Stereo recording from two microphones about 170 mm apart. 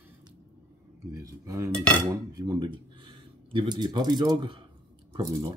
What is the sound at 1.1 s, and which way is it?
Speech, 20° right (ahead or behind).